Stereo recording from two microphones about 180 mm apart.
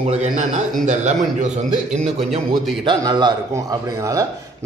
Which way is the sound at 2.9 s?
25° right (ahead or behind).